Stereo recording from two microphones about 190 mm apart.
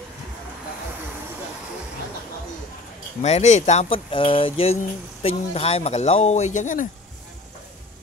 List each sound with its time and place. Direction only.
3.2 s speech: 35° left (ahead or behind)